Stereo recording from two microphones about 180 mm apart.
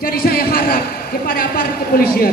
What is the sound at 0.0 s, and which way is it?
A man's voice, 55° left (ahead or behind).